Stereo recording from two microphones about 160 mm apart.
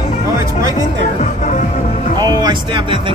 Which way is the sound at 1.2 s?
55° left (ahead or behind).